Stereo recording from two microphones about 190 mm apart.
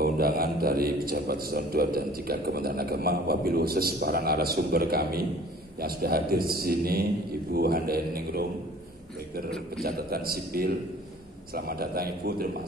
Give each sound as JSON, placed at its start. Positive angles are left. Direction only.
{"t": 0.0, "sound": "a man's voice", "side_deg": -55}
{"t": 9.8, "sound": "a man's voice", "side_deg": -55}